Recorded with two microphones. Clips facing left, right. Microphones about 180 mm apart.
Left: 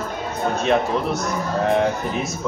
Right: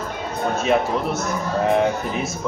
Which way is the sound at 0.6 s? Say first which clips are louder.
Even; 5° right (ahead or behind).